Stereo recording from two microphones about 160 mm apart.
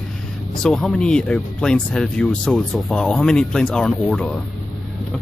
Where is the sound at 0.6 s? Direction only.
5° left (ahead or behind).